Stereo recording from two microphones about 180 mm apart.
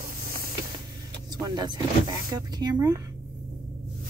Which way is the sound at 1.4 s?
20° right (ahead or behind).